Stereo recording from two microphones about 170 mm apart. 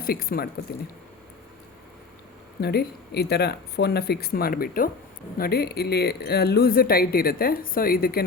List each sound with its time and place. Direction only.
0.0 s speech: 60° left (ahead or behind)
2.6 s speech: 70° left (ahead or behind)